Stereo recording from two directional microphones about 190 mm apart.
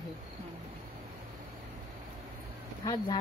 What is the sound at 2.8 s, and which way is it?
Speech, 20° left (ahead or behind).